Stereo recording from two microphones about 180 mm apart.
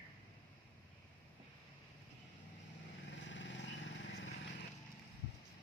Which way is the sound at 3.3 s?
90° left.